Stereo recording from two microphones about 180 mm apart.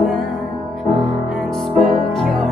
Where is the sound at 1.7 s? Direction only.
Centre (ahead or behind).